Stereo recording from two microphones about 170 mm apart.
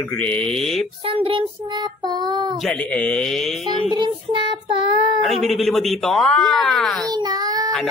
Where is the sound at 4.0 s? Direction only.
30° right (ahead or behind).